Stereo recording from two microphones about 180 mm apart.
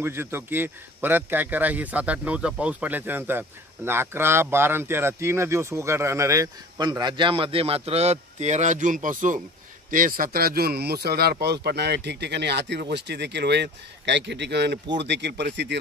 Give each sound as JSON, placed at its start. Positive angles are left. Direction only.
{"t": 0.0, "sound": "a man's voice", "side_deg": -10}